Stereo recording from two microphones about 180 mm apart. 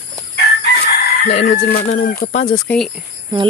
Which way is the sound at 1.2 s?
40° left (ahead or behind).